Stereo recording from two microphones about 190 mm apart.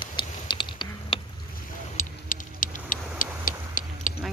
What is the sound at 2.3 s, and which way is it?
Clock, 45° left (ahead or behind).